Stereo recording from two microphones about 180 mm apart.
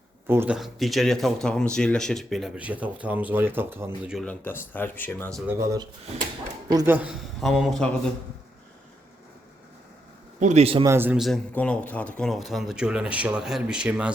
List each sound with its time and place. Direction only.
0.3 s speech: 10° right (ahead or behind)
4.3 s speech: 10° left (ahead or behind)
5.3 s speech: 15° right (ahead or behind)
6.9 s speech: 5° right (ahead or behind)
10.4 s a man's voice: 35° right (ahead or behind)
10.8 s speech: 10° right (ahead or behind)
11.5 s speech: 5° left (ahead or behind)